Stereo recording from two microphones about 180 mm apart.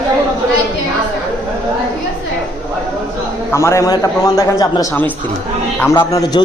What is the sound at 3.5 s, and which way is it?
A man's voice, 15° left (ahead or behind).